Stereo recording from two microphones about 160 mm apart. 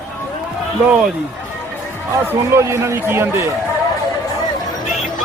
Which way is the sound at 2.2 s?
15° right (ahead or behind).